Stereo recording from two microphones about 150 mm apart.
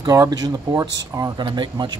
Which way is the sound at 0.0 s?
25° right (ahead or behind).